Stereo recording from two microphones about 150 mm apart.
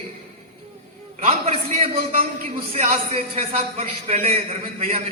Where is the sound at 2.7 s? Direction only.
45° right (ahead or behind).